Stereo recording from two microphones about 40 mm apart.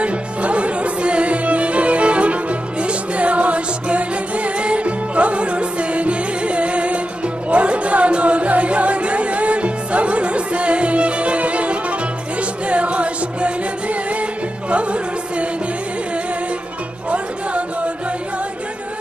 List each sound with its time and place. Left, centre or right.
0.0 s music: right
17.1 s music: right